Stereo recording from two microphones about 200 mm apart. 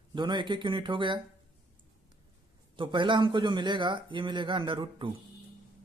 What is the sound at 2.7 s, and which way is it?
Speech, 25° right (ahead or behind).